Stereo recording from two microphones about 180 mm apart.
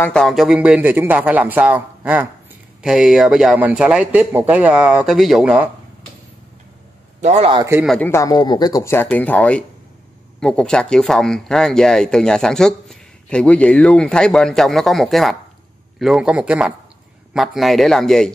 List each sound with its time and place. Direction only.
0.0 s speech: 5° left (ahead or behind)
7.2 s a man's voice: 40° right (ahead or behind)
7.5 s speech: 15° right (ahead or behind)
7.8 s speech: centre (ahead or behind)
8.1 s speech: 20° left (ahead or behind); by 18.3 s centre (ahead or behind)